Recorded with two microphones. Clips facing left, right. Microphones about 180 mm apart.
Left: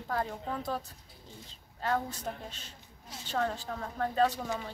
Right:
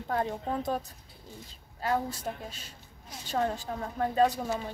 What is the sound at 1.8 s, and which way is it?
Speech, 10° right (ahead or behind).